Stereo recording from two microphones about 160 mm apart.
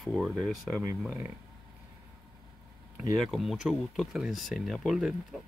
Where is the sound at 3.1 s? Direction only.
Centre (ahead or behind).